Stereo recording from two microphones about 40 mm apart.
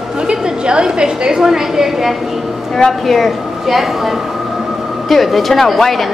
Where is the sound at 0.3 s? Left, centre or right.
Right.